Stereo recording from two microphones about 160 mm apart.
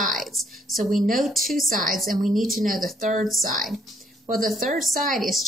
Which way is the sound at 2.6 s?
55° right (ahead or behind).